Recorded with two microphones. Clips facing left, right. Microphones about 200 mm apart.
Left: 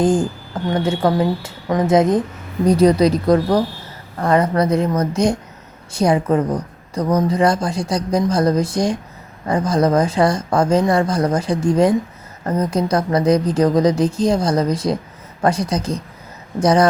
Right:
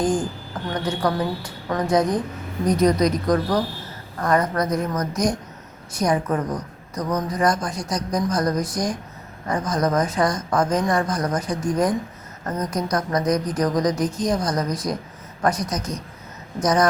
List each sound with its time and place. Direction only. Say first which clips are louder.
0.0 s a woman's voice: left 5 dB; 25° left (ahead or behind)